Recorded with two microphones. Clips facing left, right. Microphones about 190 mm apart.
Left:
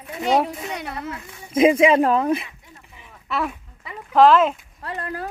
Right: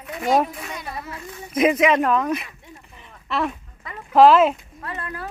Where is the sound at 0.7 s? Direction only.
65° left (ahead or behind).